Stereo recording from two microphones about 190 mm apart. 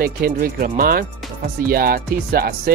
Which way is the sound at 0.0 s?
50° right (ahead or behind).